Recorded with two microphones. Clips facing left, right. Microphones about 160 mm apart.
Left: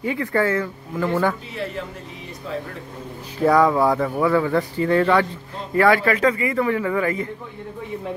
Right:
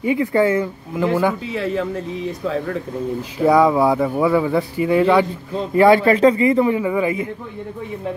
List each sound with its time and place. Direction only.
0.0 s speech: 15° right (ahead or behind)
3.4 s speech: 10° right (ahead or behind)
5.8 s speech: 25° right (ahead or behind)